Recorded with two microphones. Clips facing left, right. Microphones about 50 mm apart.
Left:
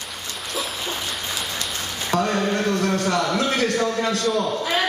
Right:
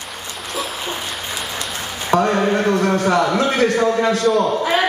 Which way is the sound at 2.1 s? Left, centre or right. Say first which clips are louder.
Right 6 dB; centre.